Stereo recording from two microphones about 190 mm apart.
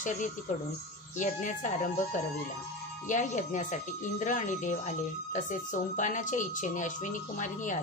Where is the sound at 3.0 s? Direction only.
40° left (ahead or behind).